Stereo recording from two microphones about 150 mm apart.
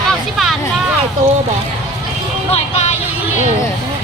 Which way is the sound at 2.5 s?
45° left (ahead or behind).